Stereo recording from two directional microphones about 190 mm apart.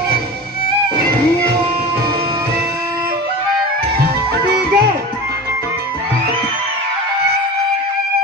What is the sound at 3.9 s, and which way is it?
Music, 55° right (ahead or behind).